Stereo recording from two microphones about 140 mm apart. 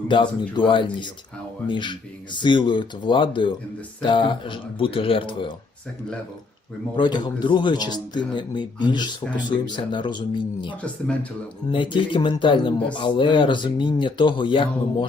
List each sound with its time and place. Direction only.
0.1 s speech: 35° left (ahead or behind)
6.9 s speech: 35° left (ahead or behind)
10.8 s speech: 10° left (ahead or behind)
11.7 s speech: 35° left (ahead or behind)